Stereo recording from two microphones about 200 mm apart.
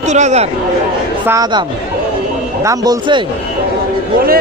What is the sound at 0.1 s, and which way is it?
Speech, 35° right (ahead or behind).